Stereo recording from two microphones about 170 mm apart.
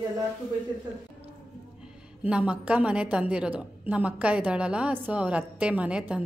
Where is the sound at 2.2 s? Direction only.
5° right (ahead or behind).